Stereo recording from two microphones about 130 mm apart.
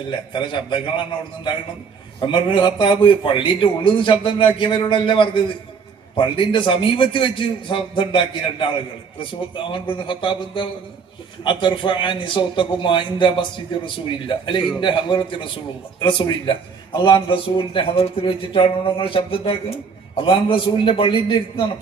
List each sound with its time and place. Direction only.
0.1 s speech: 40° left (ahead or behind)
2.2 s speech: 40° left (ahead or behind)
9.7 s speech: 40° left (ahead or behind)